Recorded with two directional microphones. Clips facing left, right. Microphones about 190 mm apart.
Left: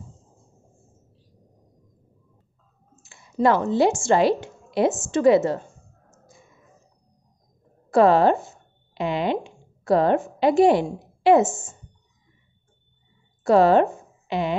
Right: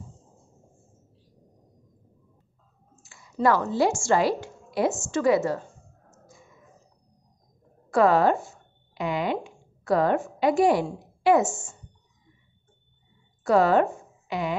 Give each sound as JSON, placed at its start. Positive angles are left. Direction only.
{"t": 3.0, "sound": "a woman's voice", "side_deg": 25}
{"t": 7.9, "sound": "speech", "side_deg": 25}
{"t": 13.4, "sound": "speech", "side_deg": 25}